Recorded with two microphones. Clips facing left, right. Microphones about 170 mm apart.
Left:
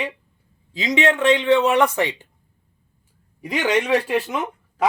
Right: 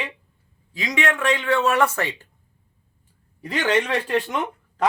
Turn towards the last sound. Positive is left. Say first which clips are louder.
# even
turn(degrees=5)  # may be behind; listen again after turning